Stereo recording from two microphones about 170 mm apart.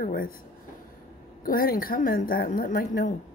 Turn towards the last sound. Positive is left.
turn(degrees=60)  # may be behind; listen again after turning